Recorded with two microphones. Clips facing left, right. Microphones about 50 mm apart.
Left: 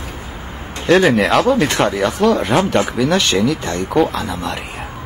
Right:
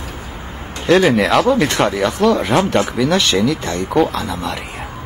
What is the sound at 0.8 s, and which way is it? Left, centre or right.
Speech, centre.